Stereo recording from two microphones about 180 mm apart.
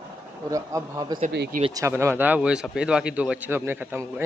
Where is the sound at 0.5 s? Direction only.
15° right (ahead or behind).